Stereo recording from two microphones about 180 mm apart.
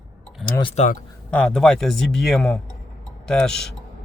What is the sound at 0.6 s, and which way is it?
Speech, 30° left (ahead or behind).